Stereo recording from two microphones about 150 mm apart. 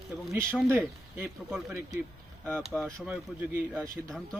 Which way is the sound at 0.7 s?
10° right (ahead or behind).